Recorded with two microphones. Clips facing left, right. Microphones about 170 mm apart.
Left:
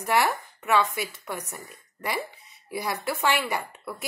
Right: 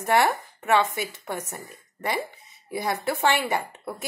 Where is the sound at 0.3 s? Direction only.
25° right (ahead or behind).